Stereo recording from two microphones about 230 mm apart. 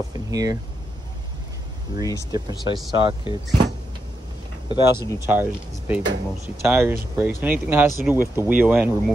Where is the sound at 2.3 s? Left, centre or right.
Centre.